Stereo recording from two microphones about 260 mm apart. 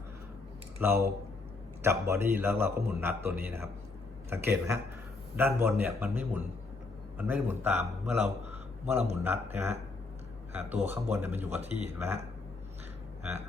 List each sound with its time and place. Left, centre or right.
0.8 s a man's voice: centre
11.6 s speech: right
11.9 s a man's voice: centre